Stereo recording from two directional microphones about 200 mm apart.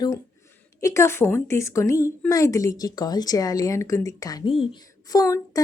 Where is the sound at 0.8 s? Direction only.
15° left (ahead or behind).